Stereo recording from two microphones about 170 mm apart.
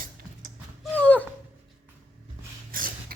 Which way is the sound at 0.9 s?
10° left (ahead or behind).